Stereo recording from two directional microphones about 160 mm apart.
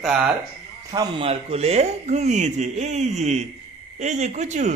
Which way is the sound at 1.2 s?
40° right (ahead or behind).